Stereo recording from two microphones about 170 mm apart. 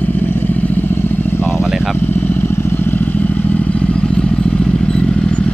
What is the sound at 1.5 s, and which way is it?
Vehicle, 5° right (ahead or behind).